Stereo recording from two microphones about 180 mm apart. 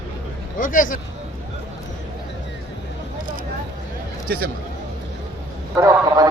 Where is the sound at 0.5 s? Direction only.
50° left (ahead or behind).